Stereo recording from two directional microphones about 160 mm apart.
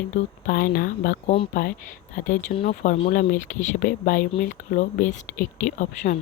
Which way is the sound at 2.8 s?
50° left (ahead or behind).